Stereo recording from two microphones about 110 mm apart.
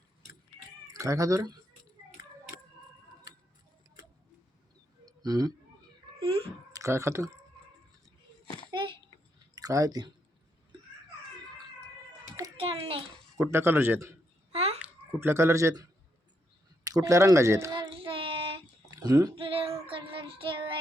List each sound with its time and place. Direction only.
0.9 s a sound: 30° right (ahead or behind)
5.0 s a sound: 35° right (ahead or behind)
6.2 s speech: 55° right (ahead or behind)
6.7 s speech: 25° right (ahead or behind)
9.6 s speech: 35° right (ahead or behind)
12.5 s a sound: 60° right (ahead or behind)
13.3 s speech: 25° right (ahead or behind)
14.5 s babbling: 65° right (ahead or behind)
15.2 s speech: 25° right (ahead or behind)
17.7 s child singing: 55° right (ahead or behind)
18.9 s a sound: 35° right (ahead or behind)
19.4 s child singing: 55° right (ahead or behind)